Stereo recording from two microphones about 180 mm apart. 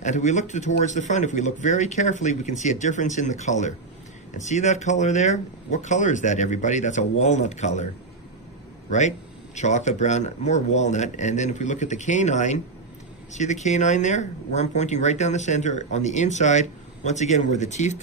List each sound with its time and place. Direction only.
0.0 s speech: 40° left (ahead or behind)
9.6 s speech: 40° left (ahead or behind)